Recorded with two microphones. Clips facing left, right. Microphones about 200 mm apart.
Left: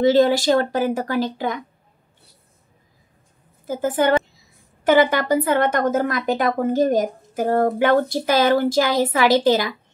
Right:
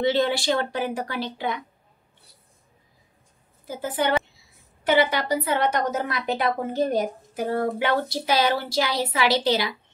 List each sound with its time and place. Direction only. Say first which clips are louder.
0.0 s a woman's voice: left 7 dB; 45° left (ahead or behind)
3.6 s a woman's voice: left 6 dB; 45° left (ahead or behind)